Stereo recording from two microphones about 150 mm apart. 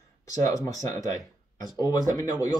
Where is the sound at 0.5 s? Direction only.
20° left (ahead or behind).